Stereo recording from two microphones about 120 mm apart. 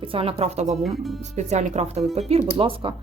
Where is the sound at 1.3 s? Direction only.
70° right (ahead or behind).